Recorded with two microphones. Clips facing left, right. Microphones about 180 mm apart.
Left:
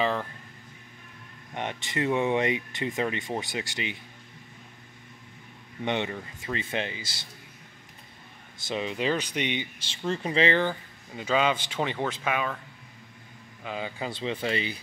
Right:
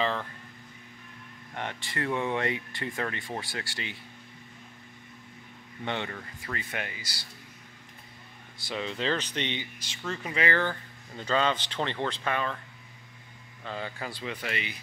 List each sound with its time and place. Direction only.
0.0 s speech: 10° left (ahead or behind)
1.5 s speech: 20° left (ahead or behind)
5.9 s speech: 20° left (ahead or behind)
8.6 s speech: 15° left (ahead or behind)
9.8 s speech: 30° left (ahead or behind); by 12.5 s 5° left (ahead or behind)
13.7 s speech: 15° left (ahead or behind); by 14.8 s 30° left (ahead or behind)